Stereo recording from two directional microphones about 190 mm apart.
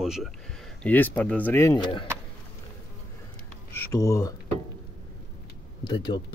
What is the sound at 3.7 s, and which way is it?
Speech, 15° left (ahead or behind).